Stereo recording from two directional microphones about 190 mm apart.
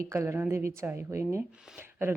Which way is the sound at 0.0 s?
15° right (ahead or behind).